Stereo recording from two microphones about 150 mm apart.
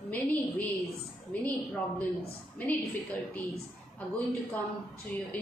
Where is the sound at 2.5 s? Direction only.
10° left (ahead or behind).